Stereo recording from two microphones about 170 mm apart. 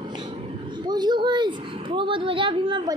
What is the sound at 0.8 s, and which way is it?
A woman's voice, 25° right (ahead or behind).